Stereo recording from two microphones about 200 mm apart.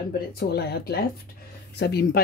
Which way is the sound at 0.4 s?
50° left (ahead or behind).